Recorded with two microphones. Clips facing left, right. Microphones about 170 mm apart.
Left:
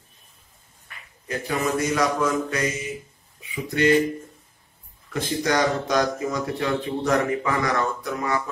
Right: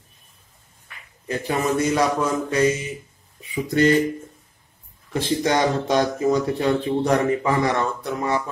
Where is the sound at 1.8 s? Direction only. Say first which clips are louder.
Right 1 dB; 30° right (ahead or behind).